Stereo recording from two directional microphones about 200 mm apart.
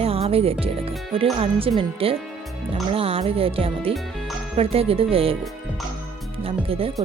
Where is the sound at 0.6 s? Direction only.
30° right (ahead or behind).